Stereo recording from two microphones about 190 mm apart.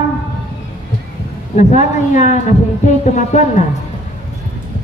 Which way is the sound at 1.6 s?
40° left (ahead or behind).